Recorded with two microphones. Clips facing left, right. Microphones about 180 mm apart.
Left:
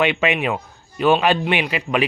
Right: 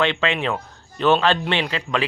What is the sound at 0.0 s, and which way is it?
Speech, 15° left (ahead or behind).